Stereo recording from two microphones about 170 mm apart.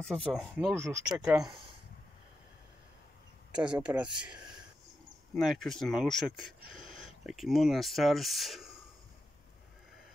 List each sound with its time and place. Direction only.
0.0 s speech: 5° left (ahead or behind)
0.8 s speech: 15° right (ahead or behind)
3.5 s speech: 5° right (ahead or behind)